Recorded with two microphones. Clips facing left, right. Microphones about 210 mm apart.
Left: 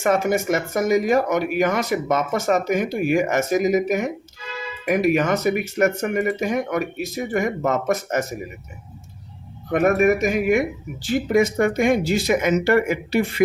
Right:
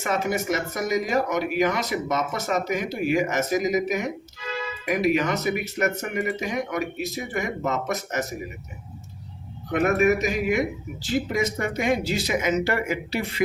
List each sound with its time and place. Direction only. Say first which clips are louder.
0.0 s speech: left 6 dB; 50° left (ahead or behind)
9.7 s speech: left 3 dB; 45° left (ahead or behind)